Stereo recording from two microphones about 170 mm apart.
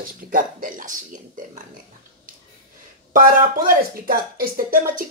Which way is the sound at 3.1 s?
55° right (ahead or behind).